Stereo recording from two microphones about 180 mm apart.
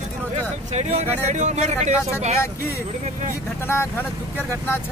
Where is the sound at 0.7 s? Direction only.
40° right (ahead or behind).